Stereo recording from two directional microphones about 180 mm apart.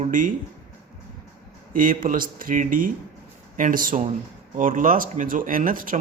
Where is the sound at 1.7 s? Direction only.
50° right (ahead or behind).